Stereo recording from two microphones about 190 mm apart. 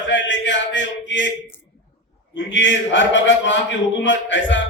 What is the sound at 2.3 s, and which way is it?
A man's voice, 75° left (ahead or behind).